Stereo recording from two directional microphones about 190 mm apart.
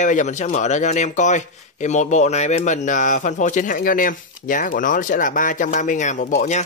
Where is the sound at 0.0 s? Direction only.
40° left (ahead or behind).